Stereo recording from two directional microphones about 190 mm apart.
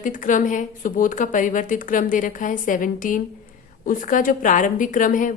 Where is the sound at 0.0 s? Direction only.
45° left (ahead or behind).